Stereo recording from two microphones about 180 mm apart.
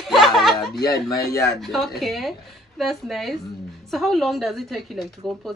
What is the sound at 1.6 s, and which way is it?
A woman's voice, centre (ahead or behind).